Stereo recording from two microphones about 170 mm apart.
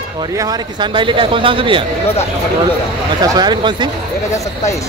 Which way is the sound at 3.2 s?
25° right (ahead or behind).